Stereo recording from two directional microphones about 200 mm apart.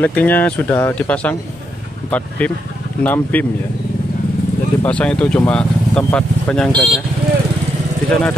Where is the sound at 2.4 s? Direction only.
5° left (ahead or behind).